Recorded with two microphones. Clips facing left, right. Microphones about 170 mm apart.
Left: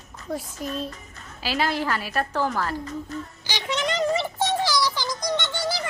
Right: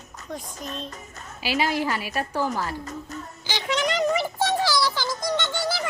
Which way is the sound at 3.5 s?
20° left (ahead or behind).